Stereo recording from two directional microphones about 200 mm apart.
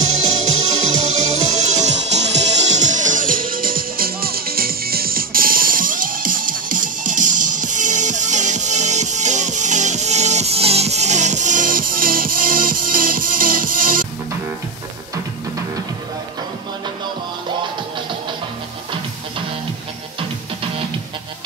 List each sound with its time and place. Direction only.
0.2 s music: 35° right (ahead or behind)
20.2 s music: 25° right (ahead or behind)